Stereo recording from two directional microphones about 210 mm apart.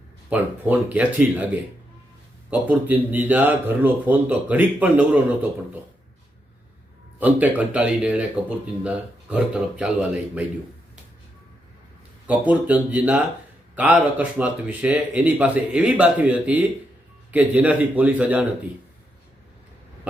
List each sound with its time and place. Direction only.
0.3 s speech: 10° right (ahead or behind)
7.2 s speech: 10° right (ahead or behind)
12.3 s speech: 5° right (ahead or behind)